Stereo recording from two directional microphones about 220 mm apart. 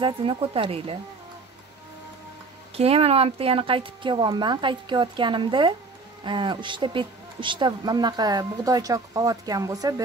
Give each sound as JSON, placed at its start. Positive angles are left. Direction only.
{"t": 0.0, "sound": "speech", "side_deg": -25}
{"t": 2.7, "sound": "speech", "side_deg": -25}